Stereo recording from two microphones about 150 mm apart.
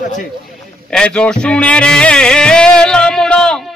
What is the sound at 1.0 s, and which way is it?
Music, 5° left (ahead or behind).